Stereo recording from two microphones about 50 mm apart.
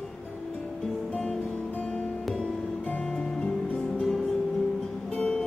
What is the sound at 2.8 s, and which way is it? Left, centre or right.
Music, left.